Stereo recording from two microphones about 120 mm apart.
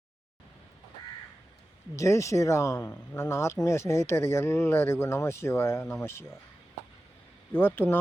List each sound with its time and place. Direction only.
2.0 s speech: 25° left (ahead or behind)
7.5 s speech: 15° left (ahead or behind)